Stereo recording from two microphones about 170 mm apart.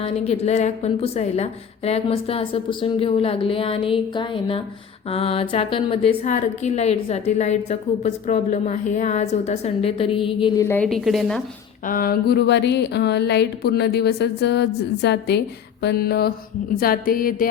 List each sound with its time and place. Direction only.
0.0 s a woman's voice: 40° left (ahead or behind)
10.6 s a woman's voice: 15° left (ahead or behind)
10.8 s a woman's voice: centre (ahead or behind)
11.9 s speech: 60° left (ahead or behind); by 15.4 s 80° left
15.8 s speech: 70° left (ahead or behind)
16.7 s music: 60° left (ahead or behind)